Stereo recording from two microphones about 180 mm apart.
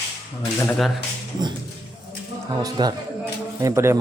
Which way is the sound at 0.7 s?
Centre (ahead or behind).